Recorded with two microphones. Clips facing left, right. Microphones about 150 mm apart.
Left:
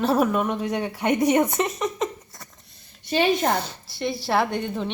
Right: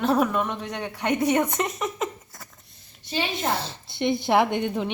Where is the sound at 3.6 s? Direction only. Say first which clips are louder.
Right 2 dB; 20° right (ahead or behind).